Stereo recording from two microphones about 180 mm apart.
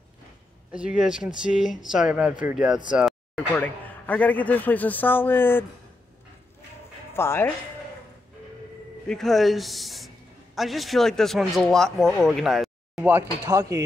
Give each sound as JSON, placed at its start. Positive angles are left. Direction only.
{"t": 0.7, "sound": "speech", "side_deg": -5}
{"t": 3.3, "sound": "speech", "side_deg": 10}
{"t": 7.2, "sound": "speech", "side_deg": 15}
{"t": 9.0, "sound": "speech", "side_deg": 5}
{"t": 13.1, "sound": "speech", "side_deg": -15}